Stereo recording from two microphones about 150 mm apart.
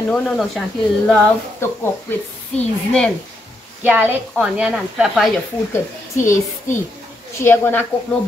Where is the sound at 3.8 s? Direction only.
10° right (ahead or behind).